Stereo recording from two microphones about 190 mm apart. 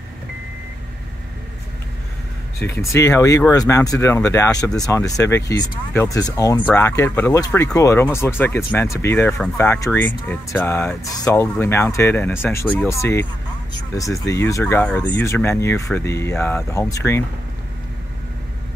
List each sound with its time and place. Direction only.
2.6 s speech: 15° left (ahead or behind)